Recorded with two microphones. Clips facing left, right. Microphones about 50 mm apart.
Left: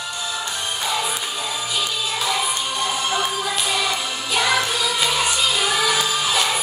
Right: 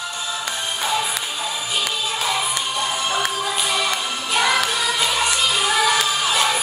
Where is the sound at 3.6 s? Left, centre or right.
Right.